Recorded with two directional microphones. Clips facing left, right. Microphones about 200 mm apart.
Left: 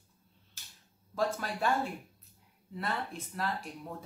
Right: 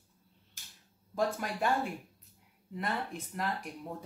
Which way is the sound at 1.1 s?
15° right (ahead or behind).